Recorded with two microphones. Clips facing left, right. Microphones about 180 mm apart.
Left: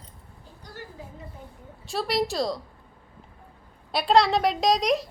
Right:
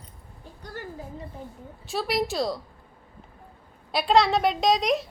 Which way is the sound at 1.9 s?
Centre (ahead or behind).